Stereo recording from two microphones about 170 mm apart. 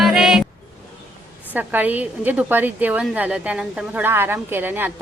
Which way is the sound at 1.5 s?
10° right (ahead or behind).